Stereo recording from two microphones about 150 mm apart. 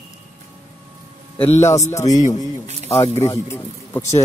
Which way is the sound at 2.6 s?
50° right (ahead or behind).